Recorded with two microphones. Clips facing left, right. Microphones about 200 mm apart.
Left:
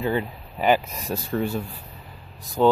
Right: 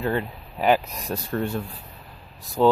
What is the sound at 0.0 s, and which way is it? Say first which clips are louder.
Speech: left 1 dB; 5° left (ahead or behind).